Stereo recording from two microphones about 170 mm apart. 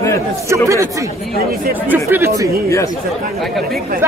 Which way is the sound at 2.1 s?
15° right (ahead or behind).